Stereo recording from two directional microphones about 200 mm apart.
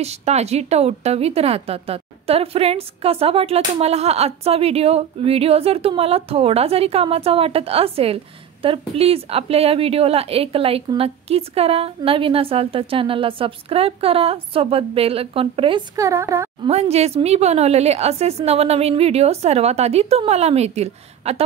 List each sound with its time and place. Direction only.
0.0 s a woman's voice: 35° right (ahead or behind)
16.0 s speech: 15° right (ahead or behind)
16.6 s speech: 30° right (ahead or behind)